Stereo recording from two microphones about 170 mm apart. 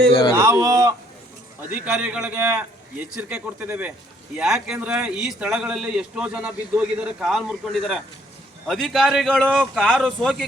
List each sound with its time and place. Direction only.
0.1 s speech: 25° left (ahead or behind)
0.3 s a sound: 20° right (ahead or behind)
1.7 s a man's voice: 5° right (ahead or behind)